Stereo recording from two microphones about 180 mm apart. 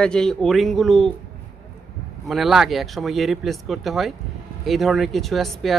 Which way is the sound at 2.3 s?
Centre (ahead or behind).